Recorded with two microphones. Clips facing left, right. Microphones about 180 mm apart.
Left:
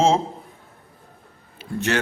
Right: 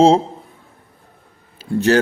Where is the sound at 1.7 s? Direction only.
35° right (ahead or behind).